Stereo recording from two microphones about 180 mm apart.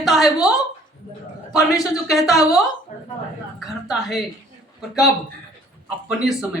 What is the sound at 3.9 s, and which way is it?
Speech, centre (ahead or behind).